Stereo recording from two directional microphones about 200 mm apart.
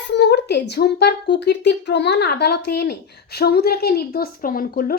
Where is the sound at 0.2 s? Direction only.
55° left (ahead or behind).